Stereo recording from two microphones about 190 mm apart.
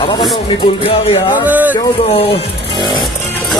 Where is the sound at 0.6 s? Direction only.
30° left (ahead or behind).